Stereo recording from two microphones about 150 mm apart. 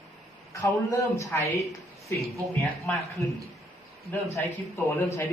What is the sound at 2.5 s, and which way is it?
Speech, 15° left (ahead or behind).